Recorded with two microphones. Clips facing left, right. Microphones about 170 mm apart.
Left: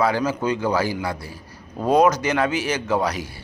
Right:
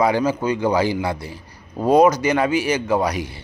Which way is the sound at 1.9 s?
10° right (ahead or behind).